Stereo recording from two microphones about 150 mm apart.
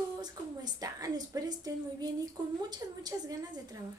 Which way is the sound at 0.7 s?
25° right (ahead or behind).